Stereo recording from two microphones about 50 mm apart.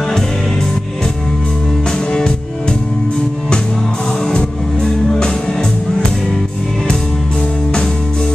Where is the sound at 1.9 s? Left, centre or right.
Centre.